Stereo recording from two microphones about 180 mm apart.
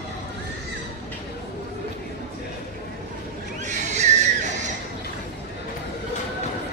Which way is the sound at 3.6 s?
40° right (ahead or behind).